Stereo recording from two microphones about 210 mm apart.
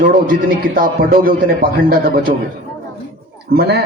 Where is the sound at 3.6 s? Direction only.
50° right (ahead or behind).